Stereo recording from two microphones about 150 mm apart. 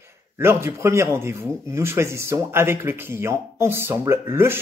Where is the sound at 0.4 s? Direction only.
15° right (ahead or behind).